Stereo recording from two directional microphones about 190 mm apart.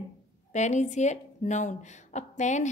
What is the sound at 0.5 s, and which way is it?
Speech, 40° left (ahead or behind).